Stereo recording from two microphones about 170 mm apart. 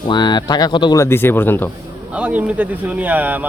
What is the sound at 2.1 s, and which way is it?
Speech, 10° right (ahead or behind).